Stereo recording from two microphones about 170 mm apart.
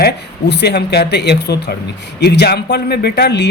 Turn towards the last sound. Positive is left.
turn(degrees=80)